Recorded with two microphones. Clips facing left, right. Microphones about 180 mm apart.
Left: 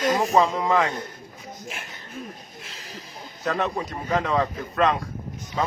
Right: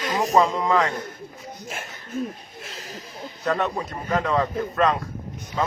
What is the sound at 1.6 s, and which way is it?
Speech, 40° right (ahead or behind).